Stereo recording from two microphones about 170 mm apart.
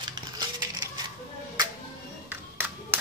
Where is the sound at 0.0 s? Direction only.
25° right (ahead or behind).